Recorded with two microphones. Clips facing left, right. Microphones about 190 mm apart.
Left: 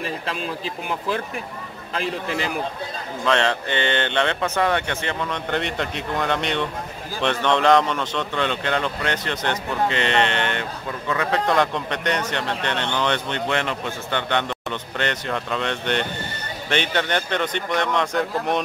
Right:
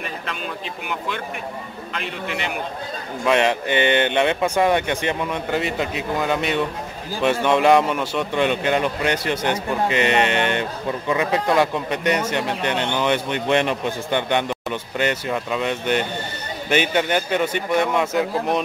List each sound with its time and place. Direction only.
0.8 s a man's voice: 35° left (ahead or behind)
3.3 s speech: 15° right (ahead or behind)